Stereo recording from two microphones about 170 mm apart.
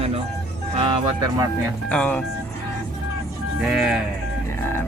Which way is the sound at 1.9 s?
10° left (ahead or behind).